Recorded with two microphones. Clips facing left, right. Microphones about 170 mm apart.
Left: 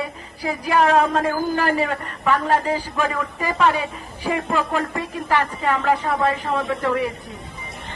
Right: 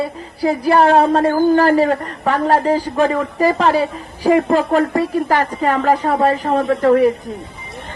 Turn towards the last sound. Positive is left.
turn(degrees=-40)  # may be behind; listen again after turning